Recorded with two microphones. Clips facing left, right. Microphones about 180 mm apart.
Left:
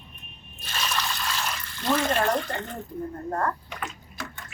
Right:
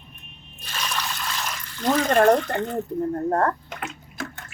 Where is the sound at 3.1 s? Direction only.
55° right (ahead or behind).